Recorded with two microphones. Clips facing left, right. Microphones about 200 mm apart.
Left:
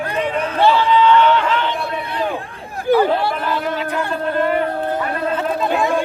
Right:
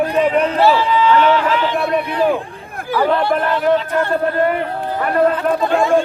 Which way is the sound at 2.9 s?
55° left (ahead or behind).